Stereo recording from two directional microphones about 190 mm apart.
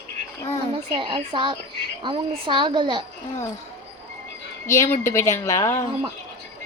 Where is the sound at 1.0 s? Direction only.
25° right (ahead or behind).